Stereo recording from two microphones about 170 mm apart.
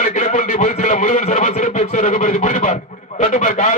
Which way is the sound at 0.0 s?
45° left (ahead or behind).